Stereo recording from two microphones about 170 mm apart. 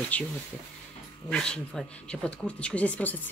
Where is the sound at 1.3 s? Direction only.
5° left (ahead or behind).